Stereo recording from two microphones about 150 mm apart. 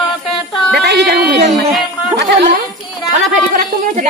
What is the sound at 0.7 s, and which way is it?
Speech, 90° right.